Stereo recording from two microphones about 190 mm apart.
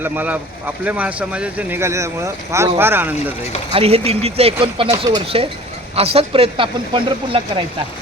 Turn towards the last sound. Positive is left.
turn(degrees=-30)  # may be behind; listen again after turning